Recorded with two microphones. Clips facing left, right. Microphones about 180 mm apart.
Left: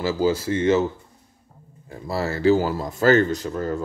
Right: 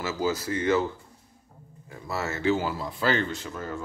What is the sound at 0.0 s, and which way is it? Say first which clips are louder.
Speech: left 6 dB; 30° left (ahead or behind).